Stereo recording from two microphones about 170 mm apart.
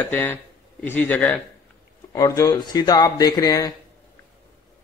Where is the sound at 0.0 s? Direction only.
10° left (ahead or behind).